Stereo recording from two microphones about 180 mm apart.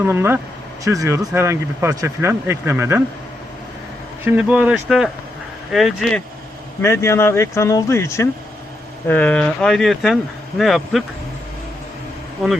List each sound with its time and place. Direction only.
0.0 s speech: 15° right (ahead or behind)
4.2 s speech: 10° right (ahead or behind)
6.8 s speech: 15° left (ahead or behind)
12.4 s speech: 5° right (ahead or behind)